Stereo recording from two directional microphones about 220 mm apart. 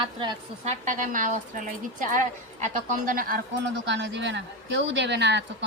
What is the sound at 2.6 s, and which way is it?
Speech, 35° right (ahead or behind).